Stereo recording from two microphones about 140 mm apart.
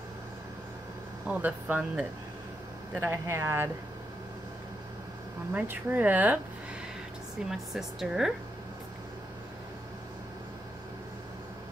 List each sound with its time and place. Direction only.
1.3 s speech: 10° right (ahead or behind)
5.5 s speech: 15° right (ahead or behind)
7.4 s a woman's voice: centre (ahead or behind)